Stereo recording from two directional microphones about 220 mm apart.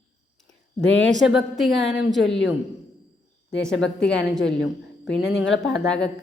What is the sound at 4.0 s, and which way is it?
A woman's voice, 5° left (ahead or behind).